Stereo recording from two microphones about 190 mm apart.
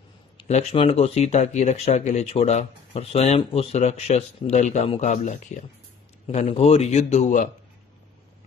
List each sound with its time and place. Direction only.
0.4 s speech: 35° left (ahead or behind)